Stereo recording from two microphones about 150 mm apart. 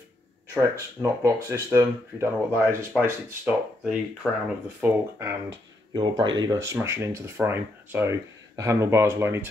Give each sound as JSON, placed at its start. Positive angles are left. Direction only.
{"t": 0.6, "sound": "speech", "side_deg": -20}
{"t": 5.9, "sound": "speech", "side_deg": -30}